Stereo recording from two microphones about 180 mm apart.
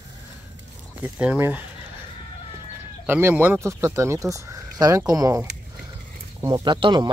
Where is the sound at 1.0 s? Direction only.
5° right (ahead or behind).